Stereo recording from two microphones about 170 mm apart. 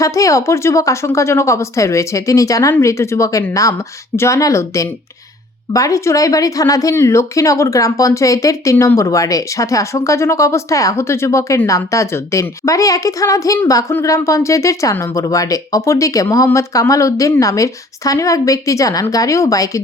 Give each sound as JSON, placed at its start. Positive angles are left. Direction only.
{"t": 0.0, "sound": "a woman's voice", "side_deg": 20}